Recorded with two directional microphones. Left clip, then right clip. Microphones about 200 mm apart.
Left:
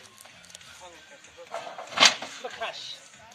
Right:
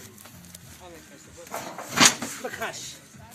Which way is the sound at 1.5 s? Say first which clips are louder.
Right 2 dB; 15° right (ahead or behind).